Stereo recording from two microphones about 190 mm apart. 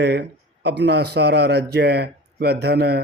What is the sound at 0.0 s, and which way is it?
Speech, 65° right (ahead or behind).